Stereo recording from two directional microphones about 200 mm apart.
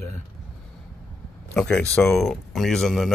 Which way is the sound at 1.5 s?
5° left (ahead or behind).